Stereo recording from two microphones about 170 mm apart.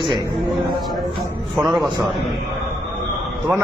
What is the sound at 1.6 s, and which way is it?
Speech, centre (ahead or behind).